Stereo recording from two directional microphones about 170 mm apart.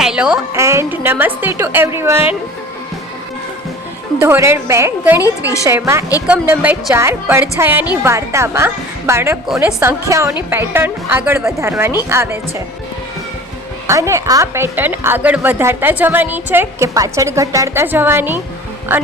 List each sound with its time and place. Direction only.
0.0 s music: 5° right (ahead or behind)
0.5 s a woman's voice: 15° right (ahead or behind)
4.2 s a woman's voice: 15° right (ahead or behind)
5.2 s a woman's voice: 20° left (ahead or behind)
5.6 s a woman's voice: 15° right (ahead or behind)
13.8 s a woman's voice: 15° right (ahead or behind)